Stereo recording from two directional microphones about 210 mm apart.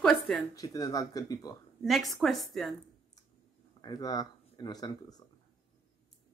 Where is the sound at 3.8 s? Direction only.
20° left (ahead or behind).